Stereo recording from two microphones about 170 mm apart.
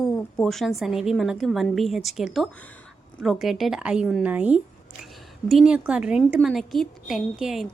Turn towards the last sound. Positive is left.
turn(degrees=0)  # may be behind; listen again after turning